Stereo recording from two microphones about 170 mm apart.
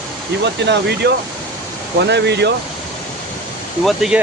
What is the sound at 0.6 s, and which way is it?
Speech, 85° right.